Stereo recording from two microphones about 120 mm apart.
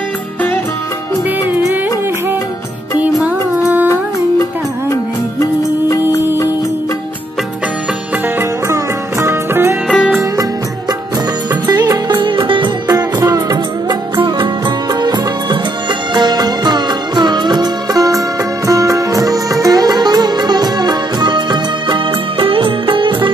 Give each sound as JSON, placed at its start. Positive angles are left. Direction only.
{"t": 3.3, "sound": "music", "side_deg": -15}
{"t": 9.2, "sound": "music", "side_deg": -20}
{"t": 9.9, "sound": "music", "side_deg": -5}
{"t": 11.7, "sound": "music", "side_deg": -35}